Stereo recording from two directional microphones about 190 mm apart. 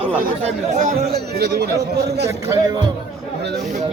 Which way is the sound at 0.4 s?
35° right (ahead or behind).